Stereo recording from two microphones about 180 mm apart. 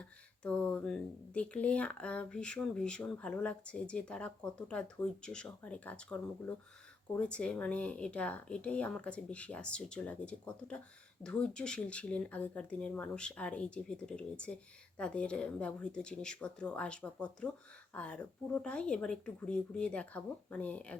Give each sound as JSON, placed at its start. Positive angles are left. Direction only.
{"t": 0.0, "sound": "speech", "side_deg": 5}